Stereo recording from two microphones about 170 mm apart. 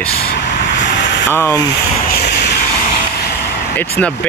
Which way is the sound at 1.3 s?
15° left (ahead or behind).